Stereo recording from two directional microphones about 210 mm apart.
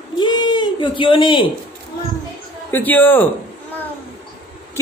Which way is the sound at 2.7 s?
10° left (ahead or behind).